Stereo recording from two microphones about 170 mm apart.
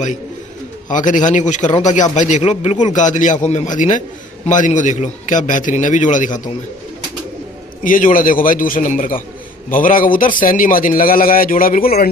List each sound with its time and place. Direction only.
0.8 s a man's voice: 50° left (ahead or behind)
7.8 s a man's voice: 55° left (ahead or behind)